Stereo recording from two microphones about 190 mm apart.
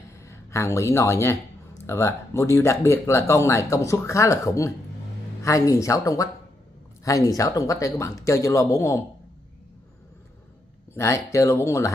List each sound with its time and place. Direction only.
0.2 s speech: 15° left (ahead or behind)
11.0 s speech: 15° left (ahead or behind)